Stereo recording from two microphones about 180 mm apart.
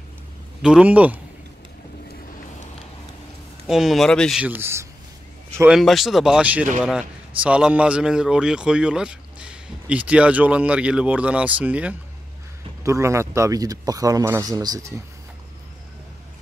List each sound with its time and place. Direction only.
0.6 s speech: 5° right (ahead or behind)
3.6 s speech: centre (ahead or behind)
4.4 s speech: 10° right (ahead or behind)
5.6 s speech: centre (ahead or behind); by 15.0 s 20° right (ahead or behind)